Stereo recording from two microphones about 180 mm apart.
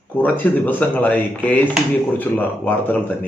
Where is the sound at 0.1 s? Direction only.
10° left (ahead or behind).